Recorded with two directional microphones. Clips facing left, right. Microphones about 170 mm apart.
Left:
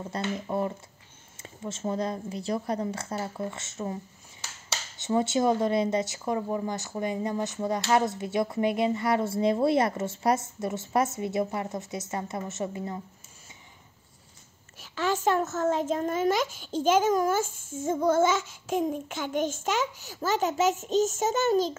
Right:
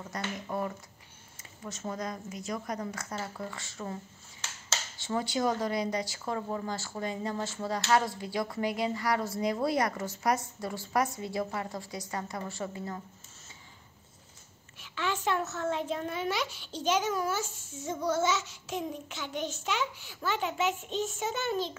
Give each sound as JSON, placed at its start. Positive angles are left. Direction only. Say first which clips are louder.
{"t": 0.0, "sound": "speech", "louder": "left 6 dB", "side_deg": 25}
{"t": 14.8, "sound": "a child's voice", "louder": "left 5 dB", "side_deg": 40}